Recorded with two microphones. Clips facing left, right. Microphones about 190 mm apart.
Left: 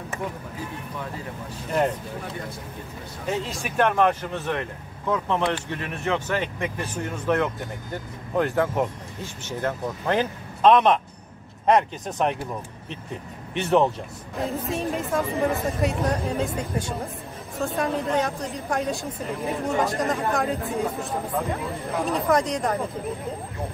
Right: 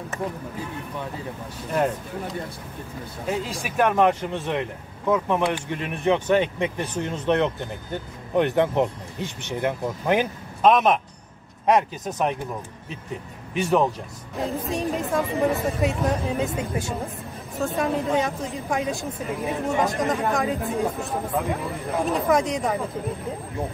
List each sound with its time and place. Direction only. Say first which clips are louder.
1.7 s speech: even; 5° right (ahead or behind)
3.3 s speech: even; 5° right (ahead or behind)
13.6 s speech: left 1 dB; centre (ahead or behind)
22.1 s speech: even; centre (ahead or behind)